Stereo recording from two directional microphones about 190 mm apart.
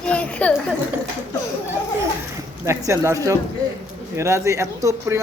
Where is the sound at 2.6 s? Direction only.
15° right (ahead or behind).